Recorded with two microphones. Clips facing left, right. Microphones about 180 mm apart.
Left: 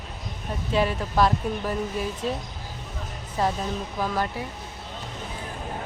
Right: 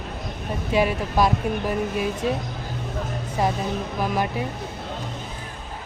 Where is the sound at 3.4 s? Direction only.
15° right (ahead or behind).